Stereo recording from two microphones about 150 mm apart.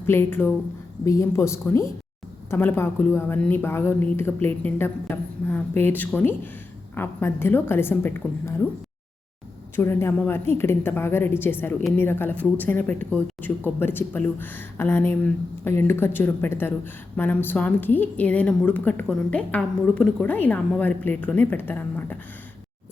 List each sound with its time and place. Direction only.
0.0 s speech: 15° left (ahead or behind)
9.7 s speech: 15° left (ahead or behind)